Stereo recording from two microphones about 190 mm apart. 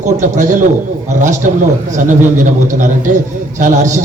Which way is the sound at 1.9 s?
40° right (ahead or behind).